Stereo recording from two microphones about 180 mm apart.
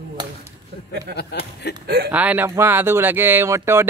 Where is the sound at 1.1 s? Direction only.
60° right (ahead or behind).